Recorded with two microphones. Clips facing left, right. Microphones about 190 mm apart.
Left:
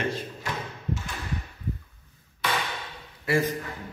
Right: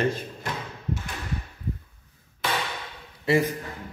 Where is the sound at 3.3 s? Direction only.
25° right (ahead or behind).